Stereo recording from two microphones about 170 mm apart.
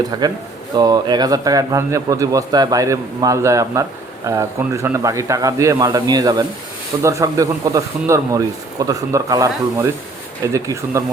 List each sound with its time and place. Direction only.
0.2 s a man's voice: 25° right (ahead or behind)